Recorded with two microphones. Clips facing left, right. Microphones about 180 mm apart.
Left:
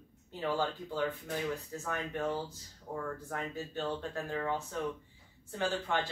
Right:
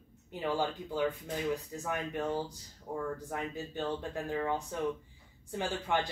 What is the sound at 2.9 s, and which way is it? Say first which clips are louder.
Speech: right 2 dB; 10° right (ahead or behind).